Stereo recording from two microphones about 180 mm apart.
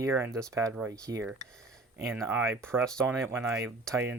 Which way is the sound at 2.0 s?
Centre (ahead or behind).